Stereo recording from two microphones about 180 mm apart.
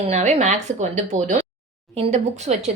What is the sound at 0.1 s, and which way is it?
A woman's voice, 40° right (ahead or behind).